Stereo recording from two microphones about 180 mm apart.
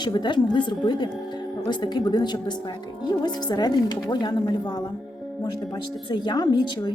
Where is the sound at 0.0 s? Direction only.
25° left (ahead or behind).